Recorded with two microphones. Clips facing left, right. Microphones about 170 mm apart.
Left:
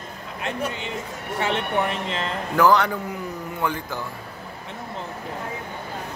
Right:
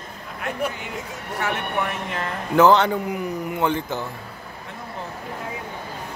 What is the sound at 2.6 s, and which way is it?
A man's voice, 25° right (ahead or behind).